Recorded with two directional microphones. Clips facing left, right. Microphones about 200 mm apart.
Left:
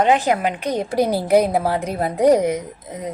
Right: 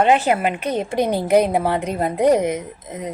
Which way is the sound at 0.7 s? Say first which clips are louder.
Left 2 dB; 10° left (ahead or behind).